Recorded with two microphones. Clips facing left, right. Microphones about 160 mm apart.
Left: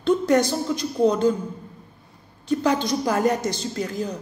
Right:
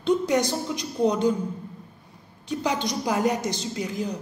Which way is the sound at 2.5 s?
15° right (ahead or behind).